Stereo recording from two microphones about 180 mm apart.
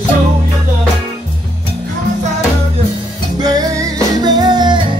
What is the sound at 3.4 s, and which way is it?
Music, 20° right (ahead or behind).